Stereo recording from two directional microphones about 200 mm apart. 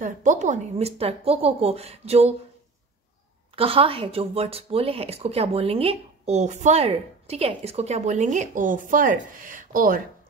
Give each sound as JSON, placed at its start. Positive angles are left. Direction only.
{"t": 0.0, "sound": "speech", "side_deg": -40}
{"t": 3.5, "sound": "speech", "side_deg": -30}